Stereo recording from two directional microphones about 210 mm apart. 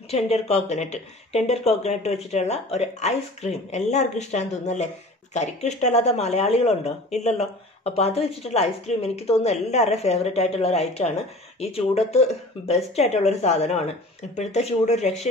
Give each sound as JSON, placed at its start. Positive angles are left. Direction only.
{"t": 0.1, "sound": "speech", "side_deg": 30}